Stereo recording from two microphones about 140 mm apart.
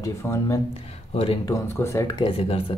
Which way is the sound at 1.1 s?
45° left (ahead or behind).